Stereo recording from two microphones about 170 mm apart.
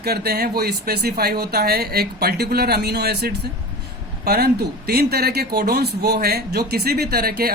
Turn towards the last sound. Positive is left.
turn(degrees=-65)  # may be behind; listen again after turning